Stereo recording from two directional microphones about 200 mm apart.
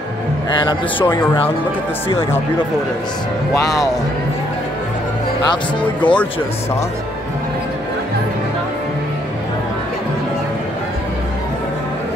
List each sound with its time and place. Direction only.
0.7 s a man's voice: 25° left (ahead or behind)
3.5 s speech: 15° left (ahead or behind)
6.0 s a man's voice: 25° left (ahead or behind)